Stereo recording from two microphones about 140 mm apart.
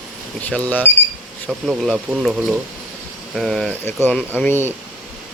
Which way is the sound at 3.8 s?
10° left (ahead or behind).